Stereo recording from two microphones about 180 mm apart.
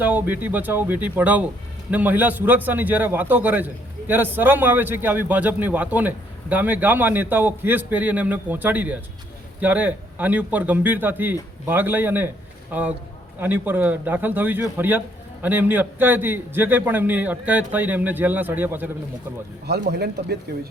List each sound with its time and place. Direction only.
0.0 s a man's voice: 10° right (ahead or behind)
19.6 s speech: 65° right (ahead or behind)